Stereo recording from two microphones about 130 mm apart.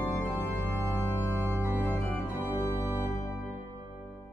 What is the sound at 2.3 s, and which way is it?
Organ, 15° right (ahead or behind).